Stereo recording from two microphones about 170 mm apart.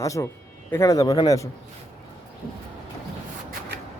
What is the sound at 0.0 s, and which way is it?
Speech, 20° left (ahead or behind).